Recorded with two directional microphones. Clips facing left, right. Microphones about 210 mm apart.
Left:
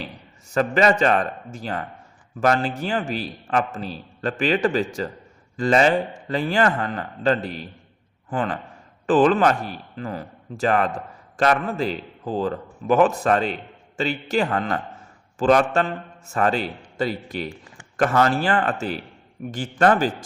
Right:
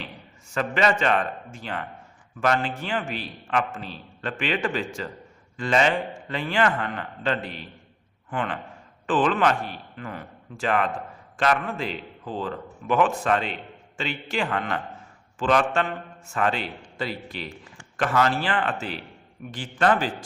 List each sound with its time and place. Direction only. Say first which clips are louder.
0.5 s a man's voice: left 5 dB; 40° left (ahead or behind)